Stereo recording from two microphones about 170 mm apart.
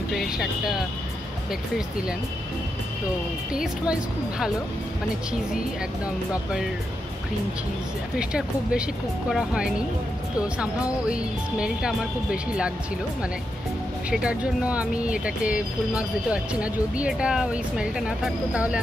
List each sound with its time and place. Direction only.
0.1 s speech: centre (ahead or behind)
8.2 s speech: 5° right (ahead or behind)
14.1 s speech: 5° right (ahead or behind)